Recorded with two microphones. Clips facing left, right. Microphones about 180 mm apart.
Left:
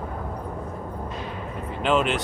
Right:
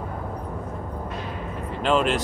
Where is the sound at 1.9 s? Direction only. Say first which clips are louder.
Right 1 dB; centre (ahead or behind).